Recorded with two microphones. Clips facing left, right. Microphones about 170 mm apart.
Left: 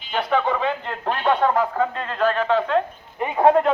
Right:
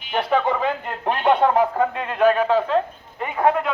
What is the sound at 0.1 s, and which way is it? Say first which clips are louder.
Radio: right 1 dB; 10° right (ahead or behind).